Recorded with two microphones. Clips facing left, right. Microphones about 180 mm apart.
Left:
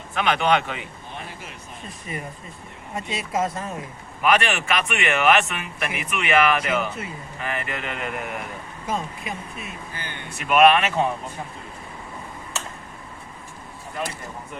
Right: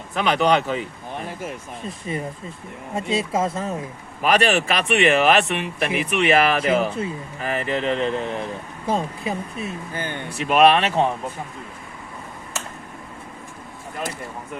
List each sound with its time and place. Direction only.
0.1 s speech: 40° right (ahead or behind)
1.9 s speech: 30° right (ahead or behind)
9.9 s speech: 50° right (ahead or behind)
10.3 s speech: 35° right (ahead or behind)